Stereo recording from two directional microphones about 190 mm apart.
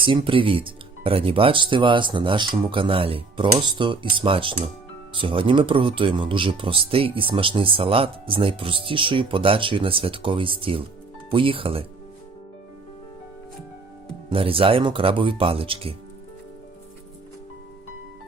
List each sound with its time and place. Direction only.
0.0 s speech: 25° right (ahead or behind)
14.3 s speech: 30° right (ahead or behind)